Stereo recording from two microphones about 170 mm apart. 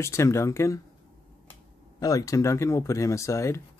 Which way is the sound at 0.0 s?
15° left (ahead or behind).